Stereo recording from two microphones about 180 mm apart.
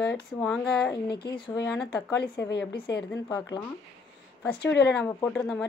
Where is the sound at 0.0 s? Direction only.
5° left (ahead or behind).